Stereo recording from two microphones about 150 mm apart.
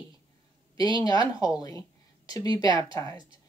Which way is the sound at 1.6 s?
25° left (ahead or behind).